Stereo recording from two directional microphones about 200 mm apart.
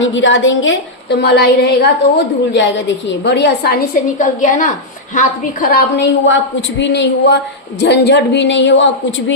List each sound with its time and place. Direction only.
0.0 s a woman's voice: 70° left (ahead or behind)
4.2 s a woman's voice: 40° left (ahead or behind)
6.2 s a woman's voice: 70° left (ahead or behind)